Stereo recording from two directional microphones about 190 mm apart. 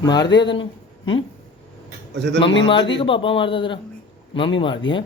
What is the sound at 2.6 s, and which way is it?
A man's voice, 25° left (ahead or behind).